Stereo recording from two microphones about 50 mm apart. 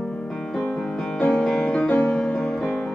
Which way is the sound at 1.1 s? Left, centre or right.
Left.